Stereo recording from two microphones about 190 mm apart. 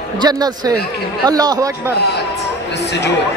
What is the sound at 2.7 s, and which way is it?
Speech, 65° left (ahead or behind).